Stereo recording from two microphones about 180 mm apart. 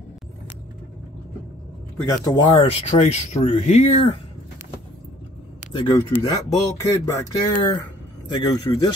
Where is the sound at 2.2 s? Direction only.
30° left (ahead or behind).